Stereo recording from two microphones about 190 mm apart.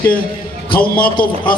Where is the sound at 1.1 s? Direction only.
25° left (ahead or behind).